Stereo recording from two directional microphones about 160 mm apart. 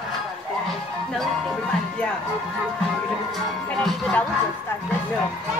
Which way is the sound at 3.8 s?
Centre (ahead or behind).